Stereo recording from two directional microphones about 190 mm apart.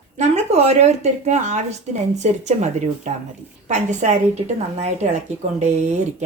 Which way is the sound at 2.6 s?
35° right (ahead or behind).